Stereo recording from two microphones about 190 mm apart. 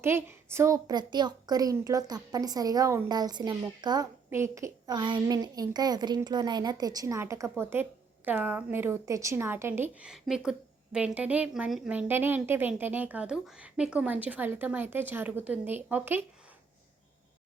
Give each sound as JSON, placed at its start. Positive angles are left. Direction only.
{"t": 0.0, "sound": "a child's voice", "side_deg": -10}